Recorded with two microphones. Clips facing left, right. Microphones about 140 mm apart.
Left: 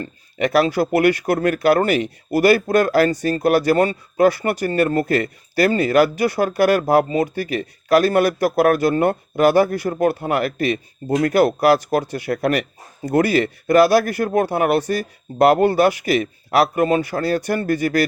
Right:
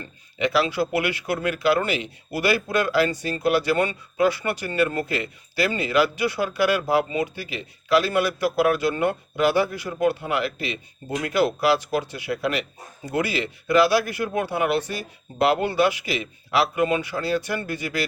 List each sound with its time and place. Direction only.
0.0 s speech: 45° left (ahead or behind)